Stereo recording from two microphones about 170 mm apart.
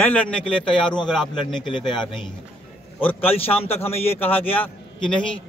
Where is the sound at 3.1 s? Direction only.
35° left (ahead or behind).